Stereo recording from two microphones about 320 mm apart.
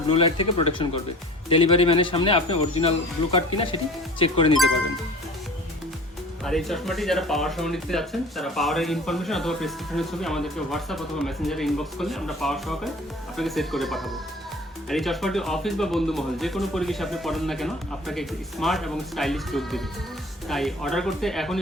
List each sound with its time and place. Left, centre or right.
0.1 s speech: centre
6.4 s speech: centre